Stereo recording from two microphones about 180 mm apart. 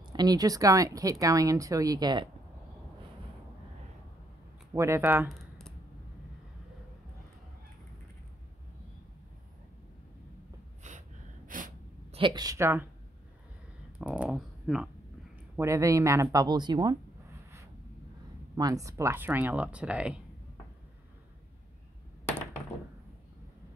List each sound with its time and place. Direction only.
0.0 s speech: 25° right (ahead or behind)
4.7 s speech: 15° right (ahead or behind)
5.3 s a sound: centre (ahead or behind)
10.8 s gasp: 45° right (ahead or behind)
12.1 s speech: 25° right (ahead or behind)
13.9 s computer keyboard: 5° right (ahead or behind)
15.5 s speech: 15° right (ahead or behind)
18.6 s speech: 20° right (ahead or behind)